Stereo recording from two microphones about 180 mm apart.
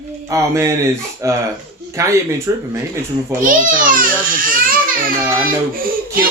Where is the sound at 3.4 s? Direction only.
50° right (ahead or behind).